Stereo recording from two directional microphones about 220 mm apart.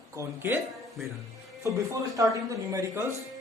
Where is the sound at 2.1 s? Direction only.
15° right (ahead or behind).